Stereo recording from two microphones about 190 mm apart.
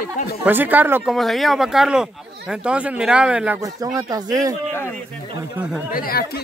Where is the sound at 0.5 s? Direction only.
10° right (ahead or behind).